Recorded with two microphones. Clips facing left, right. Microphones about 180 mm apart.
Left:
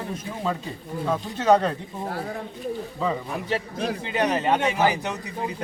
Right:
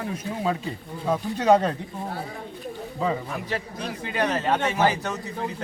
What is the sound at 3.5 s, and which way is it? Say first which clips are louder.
A man's voice: left 7 dB; 20° left (ahead or behind).